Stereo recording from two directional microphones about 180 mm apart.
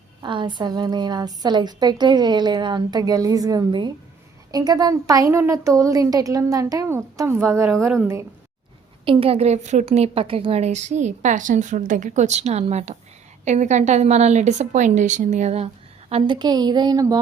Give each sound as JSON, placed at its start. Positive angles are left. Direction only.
{"t": 0.2, "sound": "a woman's voice", "side_deg": -25}
{"t": 9.0, "sound": "a woman's voice", "side_deg": -35}